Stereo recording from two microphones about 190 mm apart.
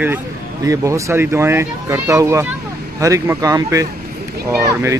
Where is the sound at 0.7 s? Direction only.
15° right (ahead or behind).